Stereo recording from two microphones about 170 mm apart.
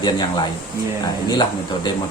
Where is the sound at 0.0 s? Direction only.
25° left (ahead or behind).